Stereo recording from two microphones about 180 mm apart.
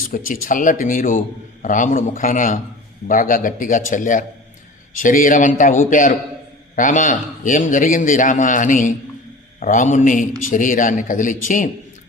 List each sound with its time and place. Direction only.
0.1 s a man's voice: 50° left (ahead or behind)